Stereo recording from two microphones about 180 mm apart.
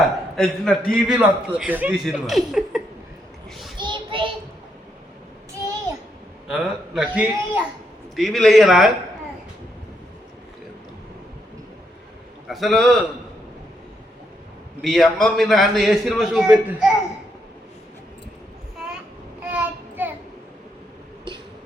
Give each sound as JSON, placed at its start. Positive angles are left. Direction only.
{"t": 0.3, "sound": "a man's voice", "side_deg": 5}
{"t": 3.8, "sound": "child singing", "side_deg": -25}
{"t": 6.5, "sound": "a man's voice", "side_deg": -5}
{"t": 12.5, "sound": "a man's voice", "side_deg": 0}
{"t": 14.8, "sound": "a man's voice", "side_deg": 0}
{"t": 19.4, "sound": "child singing", "side_deg": -10}